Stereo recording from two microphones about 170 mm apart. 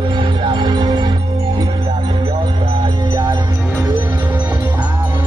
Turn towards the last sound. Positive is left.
turn(degrees=-10)  # may be behind; listen again after turning